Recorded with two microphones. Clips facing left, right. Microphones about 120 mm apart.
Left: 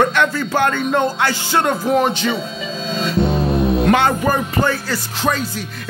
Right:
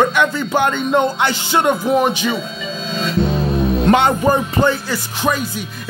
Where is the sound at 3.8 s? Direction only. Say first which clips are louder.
Right 5 dB; 25° right (ahead or behind).